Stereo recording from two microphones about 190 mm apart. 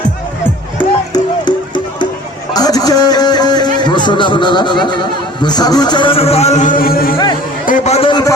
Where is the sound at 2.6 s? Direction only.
20° left (ahead or behind).